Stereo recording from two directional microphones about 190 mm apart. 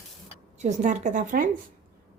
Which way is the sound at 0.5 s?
40° right (ahead or behind).